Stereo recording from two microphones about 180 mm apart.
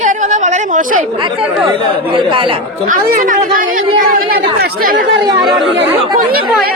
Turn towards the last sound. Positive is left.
turn(degrees=0)  # may be behind; listen again after turning